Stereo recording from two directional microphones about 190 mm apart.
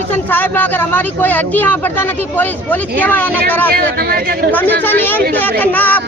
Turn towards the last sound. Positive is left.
turn(degrees=10)  # may be behind; listen again after turning